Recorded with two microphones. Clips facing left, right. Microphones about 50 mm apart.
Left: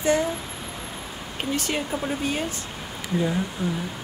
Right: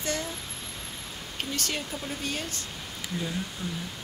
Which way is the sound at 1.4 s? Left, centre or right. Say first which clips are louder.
Left 6 dB; centre.